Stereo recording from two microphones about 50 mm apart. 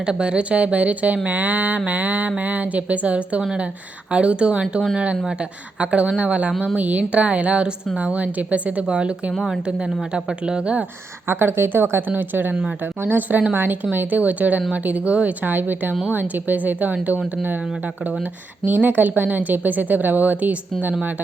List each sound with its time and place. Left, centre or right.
0.0 s speech: centre
9.3 s a woman's voice: centre; by 10.8 s right
11.3 s a woman's voice: right
14.2 s a woman's voice: right
18.6 s a woman's voice: right